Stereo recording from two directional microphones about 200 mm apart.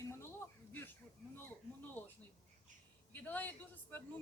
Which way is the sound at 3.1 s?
10° left (ahead or behind).